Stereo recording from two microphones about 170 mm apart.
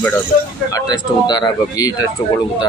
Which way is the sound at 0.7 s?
25° left (ahead or behind).